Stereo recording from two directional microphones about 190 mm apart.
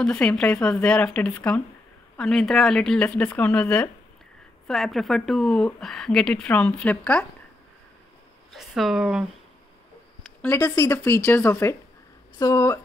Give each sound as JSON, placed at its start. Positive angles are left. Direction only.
{"t": 0.0, "sound": "speech", "side_deg": 5}
{"t": 8.5, "sound": "speech", "side_deg": 0}
{"t": 10.4, "sound": "speech", "side_deg": 10}